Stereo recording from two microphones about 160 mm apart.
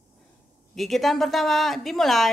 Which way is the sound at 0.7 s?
Centre (ahead or behind).